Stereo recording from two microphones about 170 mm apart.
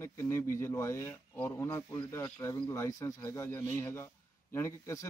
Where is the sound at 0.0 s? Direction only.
15° left (ahead or behind).